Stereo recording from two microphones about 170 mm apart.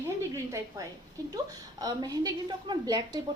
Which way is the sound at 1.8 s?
20° right (ahead or behind).